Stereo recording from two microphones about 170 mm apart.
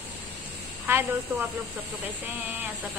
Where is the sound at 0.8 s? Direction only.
10° right (ahead or behind).